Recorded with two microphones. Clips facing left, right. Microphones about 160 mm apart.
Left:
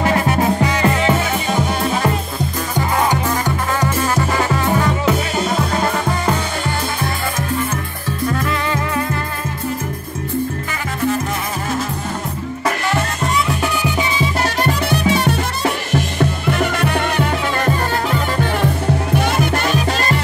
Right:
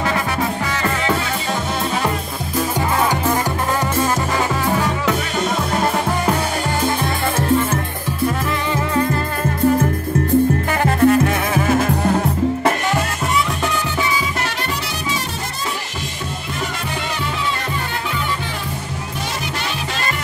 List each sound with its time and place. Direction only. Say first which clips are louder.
11.0 s music: right 5 dB; 60° right (ahead or behind)
14.6 s music: left 8 dB; 60° left (ahead or behind)